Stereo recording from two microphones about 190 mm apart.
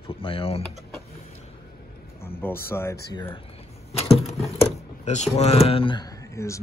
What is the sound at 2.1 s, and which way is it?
Speech, 10° left (ahead or behind).